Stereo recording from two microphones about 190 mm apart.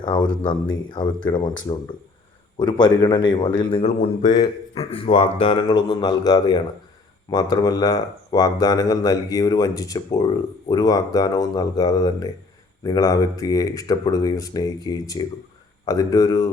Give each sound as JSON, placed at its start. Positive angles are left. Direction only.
{"t": 0.0, "sound": "speech", "side_deg": 25}
{"t": 2.6, "sound": "speech", "side_deg": 25}